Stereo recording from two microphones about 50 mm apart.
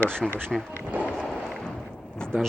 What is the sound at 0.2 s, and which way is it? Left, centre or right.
Speech, centre.